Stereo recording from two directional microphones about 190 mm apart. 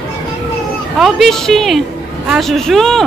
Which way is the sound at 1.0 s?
Centre (ahead or behind).